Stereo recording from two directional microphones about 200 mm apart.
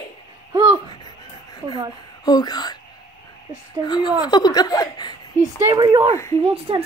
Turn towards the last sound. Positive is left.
turn(degrees=-30)  # may be behind; listen again after turning